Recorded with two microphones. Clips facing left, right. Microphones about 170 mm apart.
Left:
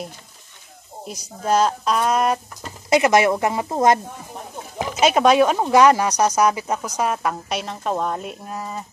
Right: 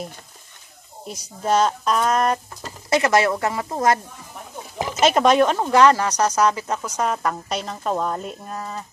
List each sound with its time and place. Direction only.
1.0 s speech: centre (ahead or behind)
2.9 s speech: 15° left (ahead or behind)
5.0 s speech: centre (ahead or behind)